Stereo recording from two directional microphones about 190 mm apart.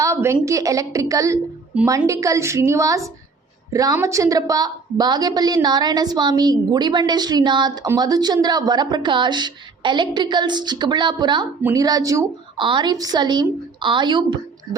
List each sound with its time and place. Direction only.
0.0 s a woman's voice: 15° right (ahead or behind)